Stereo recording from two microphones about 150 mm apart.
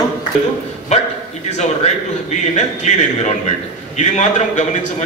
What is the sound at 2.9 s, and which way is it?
Speech, 50° left (ahead or behind).